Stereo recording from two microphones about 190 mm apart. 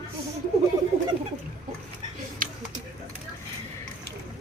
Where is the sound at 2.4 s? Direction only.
45° right (ahead or behind).